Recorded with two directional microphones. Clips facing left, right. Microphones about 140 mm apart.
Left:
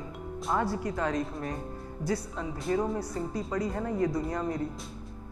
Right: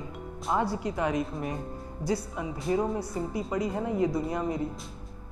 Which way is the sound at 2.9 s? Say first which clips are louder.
Right 1 dB; 10° right (ahead or behind).